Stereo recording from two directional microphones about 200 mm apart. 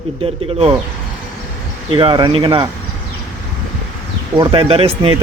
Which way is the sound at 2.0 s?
25° right (ahead or behind).